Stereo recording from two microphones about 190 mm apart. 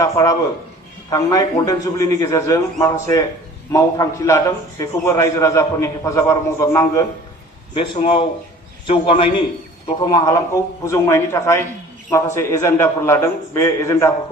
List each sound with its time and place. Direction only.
0.0 s a man's voice: 20° left (ahead or behind)
7.7 s a man's voice: 25° left (ahead or behind)